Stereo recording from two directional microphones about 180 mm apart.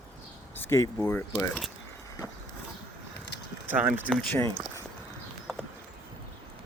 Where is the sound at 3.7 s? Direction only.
10° right (ahead or behind).